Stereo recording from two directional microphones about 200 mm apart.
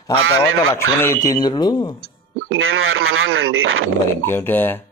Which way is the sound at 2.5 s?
90° right.